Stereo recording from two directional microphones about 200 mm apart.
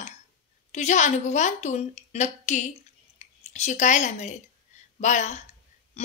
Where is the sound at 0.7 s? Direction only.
35° left (ahead or behind).